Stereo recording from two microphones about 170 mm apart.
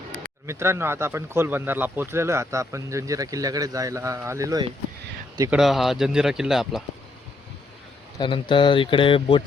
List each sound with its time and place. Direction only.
0.4 s speech: 15° right (ahead or behind)
5.5 s speech: centre (ahead or behind)
8.2 s speech: 30° left (ahead or behind)